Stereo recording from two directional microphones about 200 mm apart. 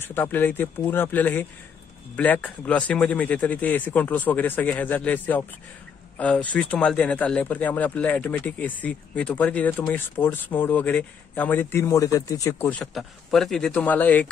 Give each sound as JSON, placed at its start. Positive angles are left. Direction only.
{"t": 0.0, "sound": "speech", "side_deg": 10}